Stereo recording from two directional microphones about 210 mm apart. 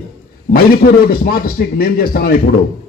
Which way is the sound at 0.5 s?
45° left (ahead or behind).